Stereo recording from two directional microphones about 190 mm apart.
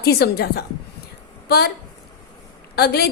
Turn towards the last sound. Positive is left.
turn(degrees=55)  # may be behind; listen again after turning